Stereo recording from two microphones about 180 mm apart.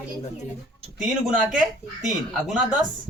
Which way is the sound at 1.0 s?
Centre (ahead or behind).